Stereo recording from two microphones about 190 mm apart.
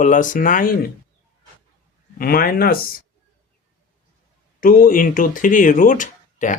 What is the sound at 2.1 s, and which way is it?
Speech, 50° left (ahead or behind).